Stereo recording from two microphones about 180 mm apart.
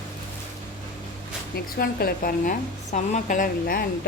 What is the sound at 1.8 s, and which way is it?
A woman's voice, 55° left (ahead or behind).